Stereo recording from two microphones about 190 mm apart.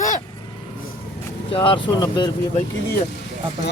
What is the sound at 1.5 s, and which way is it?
Speech, 30° left (ahead or behind).